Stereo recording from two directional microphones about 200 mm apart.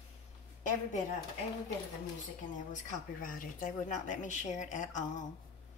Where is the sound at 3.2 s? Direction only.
45° left (ahead or behind).